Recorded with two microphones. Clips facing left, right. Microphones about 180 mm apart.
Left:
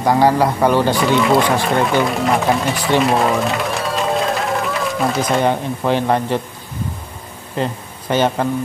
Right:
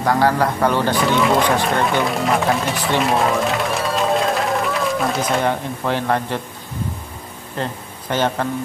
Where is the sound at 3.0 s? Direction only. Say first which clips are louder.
Left 2 dB; centre (ahead or behind).